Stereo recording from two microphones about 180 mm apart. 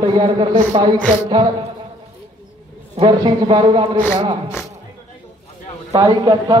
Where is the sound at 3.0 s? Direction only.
25° right (ahead or behind).